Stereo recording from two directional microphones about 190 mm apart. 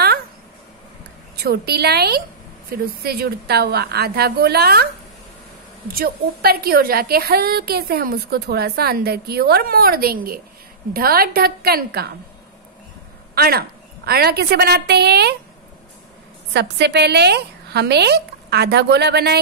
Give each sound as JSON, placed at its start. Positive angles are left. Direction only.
{"t": 1.3, "sound": "a woman's voice", "side_deg": -60}
{"t": 5.9, "sound": "a woman's voice", "side_deg": -50}
{"t": 13.3, "sound": "a woman's voice", "side_deg": -55}
{"t": 16.5, "sound": "a woman's voice", "side_deg": -60}